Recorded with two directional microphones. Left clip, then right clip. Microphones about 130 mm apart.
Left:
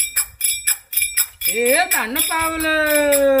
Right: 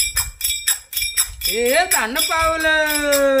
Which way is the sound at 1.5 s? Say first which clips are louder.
Even; 15° right (ahead or behind).